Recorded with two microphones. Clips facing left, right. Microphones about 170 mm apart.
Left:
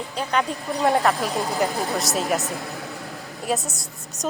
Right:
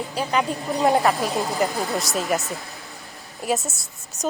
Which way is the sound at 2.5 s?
60° left (ahead or behind).